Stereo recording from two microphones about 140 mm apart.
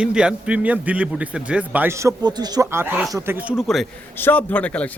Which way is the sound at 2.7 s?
15° right (ahead or behind).